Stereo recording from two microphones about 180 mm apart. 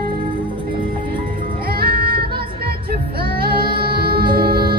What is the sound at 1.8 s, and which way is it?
Child singing, 60° right (ahead or behind).